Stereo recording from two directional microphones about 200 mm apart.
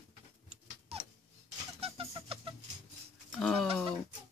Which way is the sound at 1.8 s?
30° right (ahead or behind).